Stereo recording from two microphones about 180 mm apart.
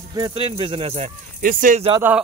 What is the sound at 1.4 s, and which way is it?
Speech, 45° right (ahead or behind).